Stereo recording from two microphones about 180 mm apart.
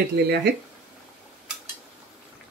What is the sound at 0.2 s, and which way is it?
Speech, 65° right (ahead or behind).